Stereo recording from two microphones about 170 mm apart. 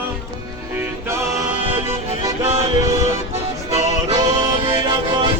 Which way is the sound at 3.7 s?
20° right (ahead or behind).